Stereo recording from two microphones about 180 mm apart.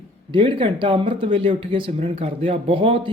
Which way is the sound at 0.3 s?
25° right (ahead or behind).